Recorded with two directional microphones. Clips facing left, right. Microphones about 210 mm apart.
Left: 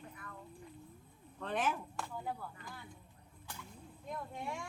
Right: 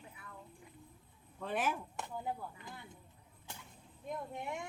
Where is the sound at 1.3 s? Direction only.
5° right (ahead or behind).